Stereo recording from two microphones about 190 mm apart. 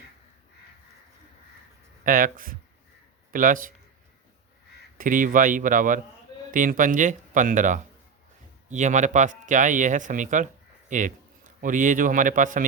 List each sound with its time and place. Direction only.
2.0 s speech: 45° right (ahead or behind)
4.9 s speech: 45° right (ahead or behind)